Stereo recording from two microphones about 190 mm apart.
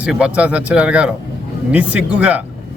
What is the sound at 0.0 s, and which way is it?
A man's voice, 5° right (ahead or behind).